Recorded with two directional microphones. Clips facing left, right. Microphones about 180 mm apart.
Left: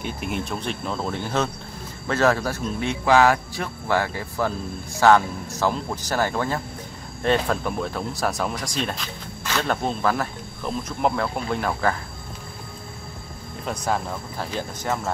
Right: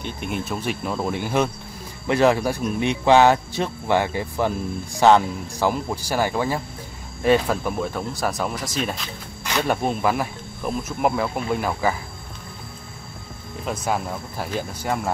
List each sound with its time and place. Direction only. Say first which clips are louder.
0.0 s speech: even; centre (ahead or behind)
13.7 s speech: right 1 dB; 5° right (ahead or behind)